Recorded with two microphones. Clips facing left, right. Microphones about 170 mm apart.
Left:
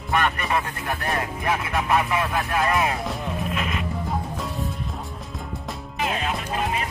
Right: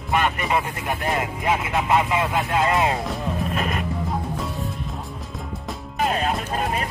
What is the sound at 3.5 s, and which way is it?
Speech, 40° right (ahead or behind).